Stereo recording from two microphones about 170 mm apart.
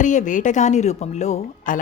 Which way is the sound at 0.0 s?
45° left (ahead or behind).